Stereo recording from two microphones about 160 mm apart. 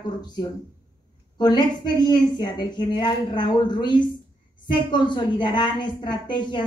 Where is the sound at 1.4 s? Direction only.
25° left (ahead or behind).